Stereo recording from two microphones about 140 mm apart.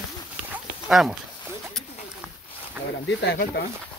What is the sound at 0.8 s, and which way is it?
Speech, centre (ahead or behind).